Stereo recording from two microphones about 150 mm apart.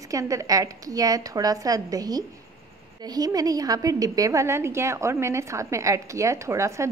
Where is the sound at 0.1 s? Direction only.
20° right (ahead or behind).